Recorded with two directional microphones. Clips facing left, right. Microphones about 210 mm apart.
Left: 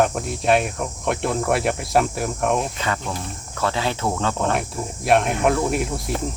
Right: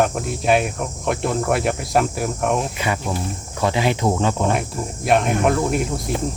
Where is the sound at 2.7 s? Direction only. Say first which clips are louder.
Right 3 dB; 10° right (ahead or behind).